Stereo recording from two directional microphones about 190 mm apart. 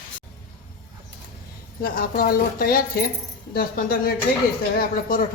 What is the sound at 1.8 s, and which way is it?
Speech, 50° left (ahead or behind).